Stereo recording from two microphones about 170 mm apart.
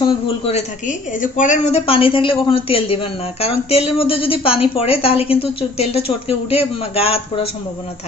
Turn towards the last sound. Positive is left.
turn(degrees=35)  # may be behind; listen again after turning